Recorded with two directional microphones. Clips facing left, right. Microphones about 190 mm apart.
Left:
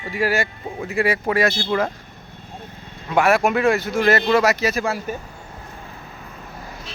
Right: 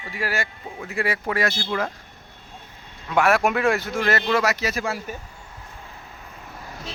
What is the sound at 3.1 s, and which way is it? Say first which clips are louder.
Speech: left 2 dB; 5° left (ahead or behind).